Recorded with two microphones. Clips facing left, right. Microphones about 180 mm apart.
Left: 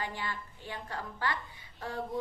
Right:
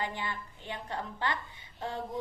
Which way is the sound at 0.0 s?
20° right (ahead or behind).